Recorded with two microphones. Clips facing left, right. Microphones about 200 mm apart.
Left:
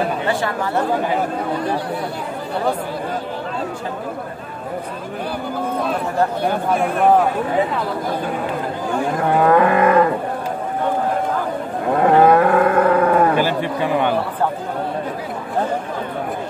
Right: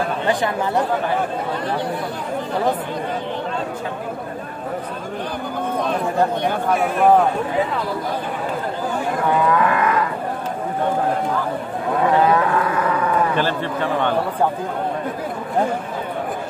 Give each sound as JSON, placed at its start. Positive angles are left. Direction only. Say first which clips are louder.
{"t": 0.3, "sound": "speech", "louder": "right 1 dB", "side_deg": -15}
{"t": 6.4, "sound": "speech", "louder": "left 1 dB", "side_deg": 0}
{"t": 9.4, "sound": "wild animals", "louder": "left 7 dB", "side_deg": 50}
{"t": 12.1, "sound": "cattle", "louder": "left 5 dB", "side_deg": 55}
{"t": 13.4, "sound": "a man's voice", "louder": "left 2 dB", "side_deg": 10}